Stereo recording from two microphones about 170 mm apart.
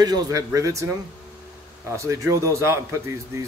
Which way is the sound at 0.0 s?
20° right (ahead or behind).